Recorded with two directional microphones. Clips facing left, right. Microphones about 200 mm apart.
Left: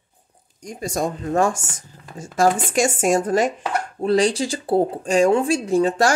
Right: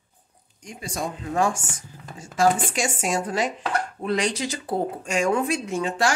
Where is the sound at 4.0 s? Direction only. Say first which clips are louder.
Left 9 dB; 30° left (ahead or behind).